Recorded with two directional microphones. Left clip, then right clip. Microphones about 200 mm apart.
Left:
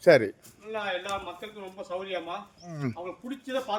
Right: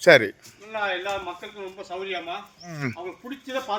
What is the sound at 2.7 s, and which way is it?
Speech, 5° left (ahead or behind).